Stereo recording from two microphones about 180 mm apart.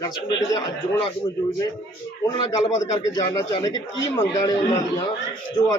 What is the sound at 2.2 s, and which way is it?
A man's voice, 25° left (ahead or behind).